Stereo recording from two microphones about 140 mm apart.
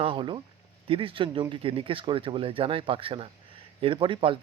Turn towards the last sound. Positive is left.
turn(degrees=-35)  # may be behind; listen again after turning